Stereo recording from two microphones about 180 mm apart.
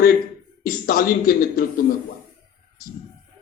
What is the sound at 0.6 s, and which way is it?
A man's voice, 50° left (ahead or behind).